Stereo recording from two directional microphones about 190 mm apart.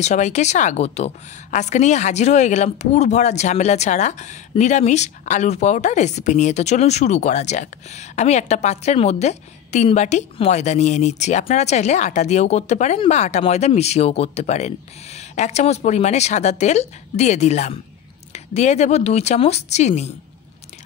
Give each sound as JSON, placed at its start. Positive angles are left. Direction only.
{"t": 0.0, "sound": "a woman's voice", "side_deg": 40}